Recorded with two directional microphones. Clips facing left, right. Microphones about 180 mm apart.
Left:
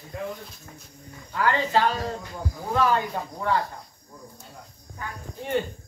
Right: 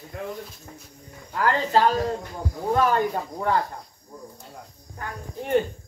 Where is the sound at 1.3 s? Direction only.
45° right (ahead or behind).